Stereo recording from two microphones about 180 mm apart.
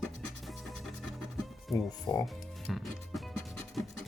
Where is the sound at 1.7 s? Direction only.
20° left (ahead or behind).